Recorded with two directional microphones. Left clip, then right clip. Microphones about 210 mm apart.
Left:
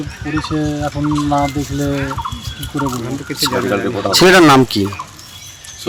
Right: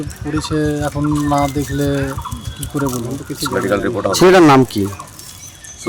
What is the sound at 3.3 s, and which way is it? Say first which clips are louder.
Speech: left 1 dB; centre (ahead or behind).